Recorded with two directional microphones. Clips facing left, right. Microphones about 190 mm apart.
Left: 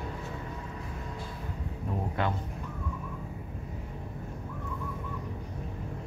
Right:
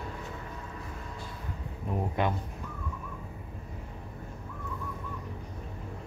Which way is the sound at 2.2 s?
15° right (ahead or behind).